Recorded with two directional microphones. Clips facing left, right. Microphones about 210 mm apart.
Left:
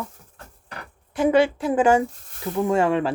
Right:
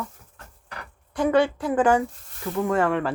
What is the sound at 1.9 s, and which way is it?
Speech, 25° left (ahead or behind).